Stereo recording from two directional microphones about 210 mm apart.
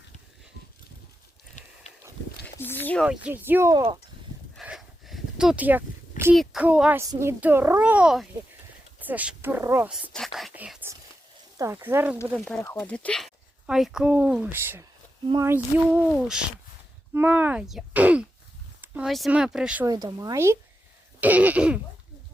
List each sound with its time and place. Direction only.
1.6 s a sound: 35° left (ahead or behind)
2.6 s speech: 10° left (ahead or behind)
3.2 s a child's voice: 10° right (ahead or behind)
4.5 s a sound: centre (ahead or behind)
6.3 s a child's voice: centre (ahead or behind)
10.1 s whispering: centre (ahead or behind)
11.5 s a child's voice: 15° right (ahead or behind)
12.5 s a child's voice: 5° left (ahead or behind)
19.8 s a child's voice: 20° right (ahead or behind)